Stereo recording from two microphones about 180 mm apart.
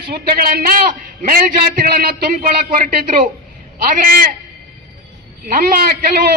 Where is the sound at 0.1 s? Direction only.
55° right (ahead or behind).